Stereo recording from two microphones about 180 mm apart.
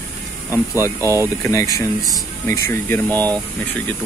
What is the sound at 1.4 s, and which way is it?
Speech, 15° left (ahead or behind).